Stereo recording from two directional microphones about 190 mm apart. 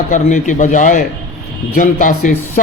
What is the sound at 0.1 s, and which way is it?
Speech, 40° left (ahead or behind).